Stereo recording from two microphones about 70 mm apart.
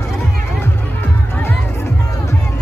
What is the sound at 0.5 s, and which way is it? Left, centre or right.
Music, left.